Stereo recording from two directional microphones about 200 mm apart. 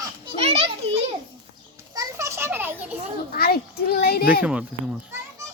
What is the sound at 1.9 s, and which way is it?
Children playing, 15° right (ahead or behind).